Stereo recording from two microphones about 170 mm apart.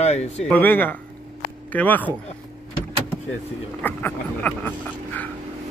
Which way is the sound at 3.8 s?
10° left (ahead or behind).